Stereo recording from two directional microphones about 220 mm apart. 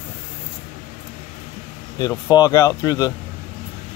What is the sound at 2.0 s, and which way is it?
Speech, 20° left (ahead or behind).